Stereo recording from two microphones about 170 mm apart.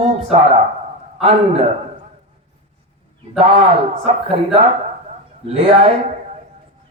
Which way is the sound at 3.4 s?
35° right (ahead or behind).